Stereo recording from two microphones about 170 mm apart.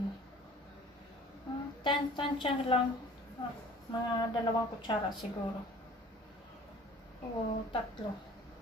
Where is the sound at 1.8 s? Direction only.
30° left (ahead or behind).